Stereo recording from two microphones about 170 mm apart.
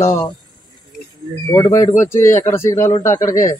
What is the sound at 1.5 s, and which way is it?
A man's voice, 15° left (ahead or behind).